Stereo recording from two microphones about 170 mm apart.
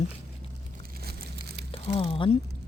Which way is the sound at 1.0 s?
70° right (ahead or behind).